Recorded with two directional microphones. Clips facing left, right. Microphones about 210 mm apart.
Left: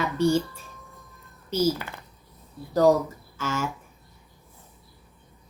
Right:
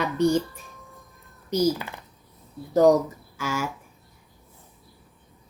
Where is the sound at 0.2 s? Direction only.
15° right (ahead or behind).